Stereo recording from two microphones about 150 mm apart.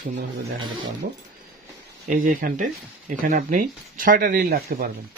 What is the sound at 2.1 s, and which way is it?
Speech, 70° right (ahead or behind).